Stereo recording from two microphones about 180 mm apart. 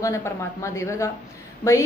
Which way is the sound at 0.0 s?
15° left (ahead or behind).